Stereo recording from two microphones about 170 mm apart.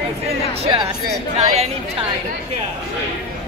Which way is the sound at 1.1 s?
40° right (ahead or behind).